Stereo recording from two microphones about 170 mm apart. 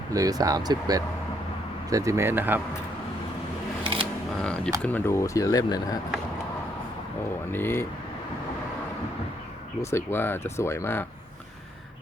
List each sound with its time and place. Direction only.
0.1 s speech: 20° right (ahead or behind)
4.4 s speech: 5° left (ahead or behind); by 6.0 s 20° left (ahead or behind)
7.5 s speech: 15° left (ahead or behind)
9.8 s speech: 15° left (ahead or behind)